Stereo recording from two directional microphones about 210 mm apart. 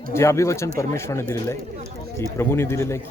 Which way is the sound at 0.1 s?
15° left (ahead or behind).